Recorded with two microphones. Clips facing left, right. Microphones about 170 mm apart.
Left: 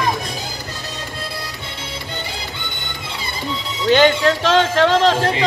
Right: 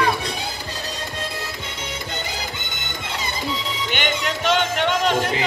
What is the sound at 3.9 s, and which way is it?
Speech, 90° left.